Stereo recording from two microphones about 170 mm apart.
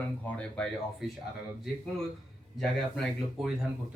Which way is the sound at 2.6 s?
Centre (ahead or behind).